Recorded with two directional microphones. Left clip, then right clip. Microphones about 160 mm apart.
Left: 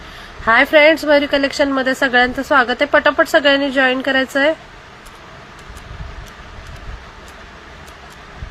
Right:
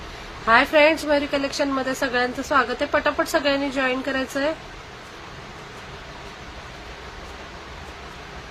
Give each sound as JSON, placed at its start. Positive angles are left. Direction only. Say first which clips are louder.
{"t": 0.4, "sound": "a woman's voice", "louder": "left 6 dB", "side_deg": 60}